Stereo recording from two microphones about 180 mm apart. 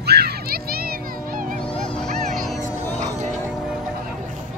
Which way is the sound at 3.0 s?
40° right (ahead or behind).